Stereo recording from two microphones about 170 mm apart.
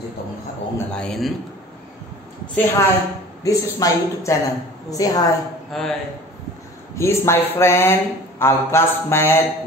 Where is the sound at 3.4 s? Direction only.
20° left (ahead or behind).